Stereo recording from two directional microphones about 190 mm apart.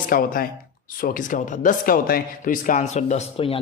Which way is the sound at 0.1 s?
50° left (ahead or behind).